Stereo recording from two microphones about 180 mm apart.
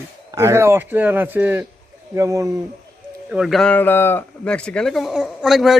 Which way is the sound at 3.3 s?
Centre (ahead or behind).